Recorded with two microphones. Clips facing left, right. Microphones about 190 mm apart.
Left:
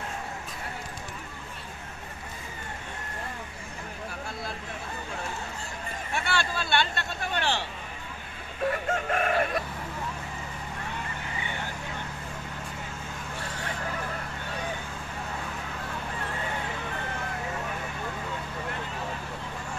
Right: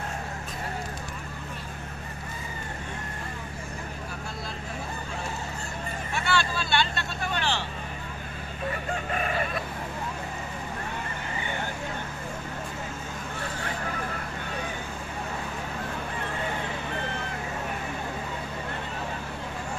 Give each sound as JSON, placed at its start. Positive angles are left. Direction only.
{"t": 6.1, "sound": "vehicle", "side_deg": 55}
{"t": 9.1, "sound": "chicken", "side_deg": 70}